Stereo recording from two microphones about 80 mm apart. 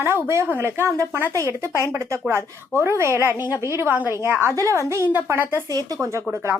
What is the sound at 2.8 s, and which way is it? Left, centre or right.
A woman's voice, right.